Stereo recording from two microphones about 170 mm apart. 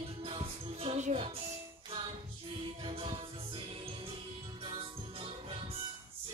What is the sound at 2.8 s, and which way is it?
Music, 35° right (ahead or behind).